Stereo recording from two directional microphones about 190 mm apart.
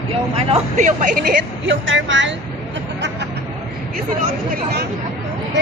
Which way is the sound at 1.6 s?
85° right.